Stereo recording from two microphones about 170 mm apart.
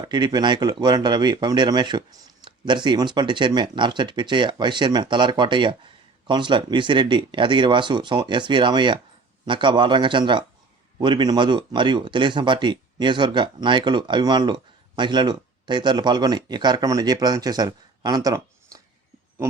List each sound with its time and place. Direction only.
0.1 s speech: 25° right (ahead or behind)